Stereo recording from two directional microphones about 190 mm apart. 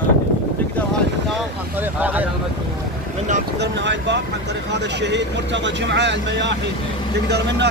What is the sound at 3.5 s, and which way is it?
Speech, 65° right (ahead or behind).